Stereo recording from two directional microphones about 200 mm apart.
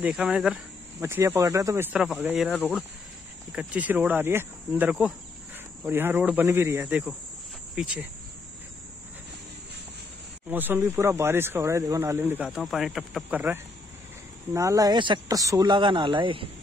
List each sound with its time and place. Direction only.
0.0 s speech: 5° right (ahead or behind)
1.0 s speech: 15° right (ahead or behind)
10.5 s speech: 10° right (ahead or behind)